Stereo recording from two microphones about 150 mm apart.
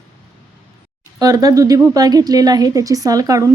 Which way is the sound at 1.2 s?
25° right (ahead or behind).